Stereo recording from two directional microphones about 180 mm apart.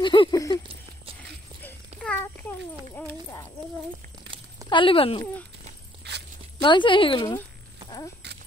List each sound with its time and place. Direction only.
0.0 s horse: 25° left (ahead or behind)
2.0 s a sound: 5° left (ahead or behind)
4.6 s speech: 30° left (ahead or behind)
6.0 s walk: 70° right (ahead or behind)
6.6 s speech: 25° left (ahead or behind)